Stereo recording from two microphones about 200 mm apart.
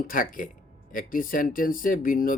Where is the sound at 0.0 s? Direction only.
45° left (ahead or behind).